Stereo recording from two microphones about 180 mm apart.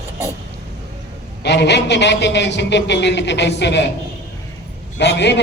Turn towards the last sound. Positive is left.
turn(degrees=75)  # may be behind; listen again after turning